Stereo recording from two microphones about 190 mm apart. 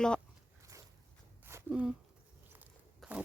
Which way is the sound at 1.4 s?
10° right (ahead or behind).